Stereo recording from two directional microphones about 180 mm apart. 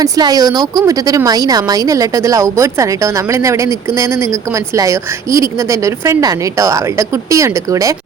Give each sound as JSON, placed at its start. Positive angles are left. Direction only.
{"t": 0.0, "sound": "speech", "side_deg": -20}